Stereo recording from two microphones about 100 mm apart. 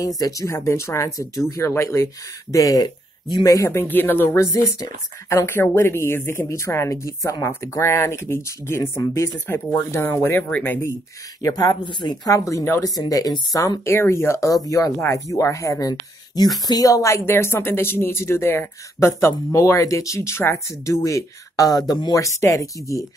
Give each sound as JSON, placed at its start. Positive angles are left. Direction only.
{"t": 0.2, "sound": "speech", "side_deg": 35}
{"t": 3.7, "sound": "speech", "side_deg": 20}
{"t": 4.4, "sound": "speech", "side_deg": 30}
{"t": 11.4, "sound": "speech", "side_deg": 40}
{"t": 12.3, "sound": "speech", "side_deg": 35}
{"t": 13.8, "sound": "speech", "side_deg": 25}